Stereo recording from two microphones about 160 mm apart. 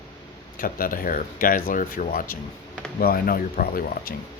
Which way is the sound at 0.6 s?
60° left (ahead or behind).